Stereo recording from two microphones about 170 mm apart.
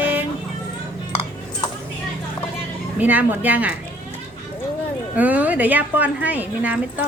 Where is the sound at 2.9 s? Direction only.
10° right (ahead or behind).